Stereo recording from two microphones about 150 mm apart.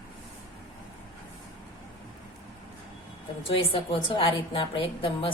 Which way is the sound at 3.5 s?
40° left (ahead or behind).